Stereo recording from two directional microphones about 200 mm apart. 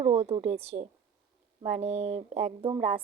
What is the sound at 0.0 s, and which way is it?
A woman's voice, 30° right (ahead or behind).